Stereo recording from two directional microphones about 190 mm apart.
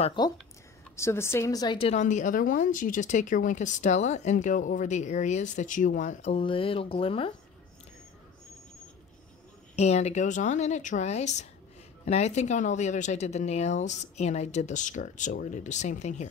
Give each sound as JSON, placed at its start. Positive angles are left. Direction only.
{"t": 0.0, "sound": "speech", "side_deg": 25}
{"t": 0.9, "sound": "a woman's voice", "side_deg": 15}
{"t": 9.8, "sound": "a woman's voice", "side_deg": 35}